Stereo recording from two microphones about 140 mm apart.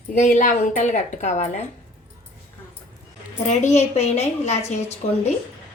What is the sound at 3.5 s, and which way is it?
A woman's voice, 55° left (ahead or behind).